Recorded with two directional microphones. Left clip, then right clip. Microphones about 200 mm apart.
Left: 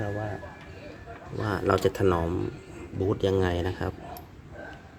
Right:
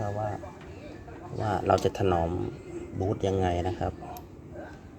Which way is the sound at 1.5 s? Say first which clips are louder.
Even; 20° left (ahead or behind).